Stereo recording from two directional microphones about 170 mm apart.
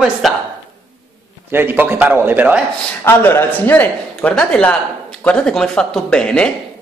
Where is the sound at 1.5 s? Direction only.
10° right (ahead or behind).